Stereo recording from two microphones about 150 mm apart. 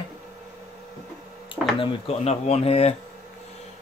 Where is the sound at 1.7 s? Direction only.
40° left (ahead or behind).